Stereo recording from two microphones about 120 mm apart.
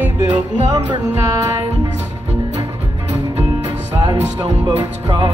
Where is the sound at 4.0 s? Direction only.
35° right (ahead or behind).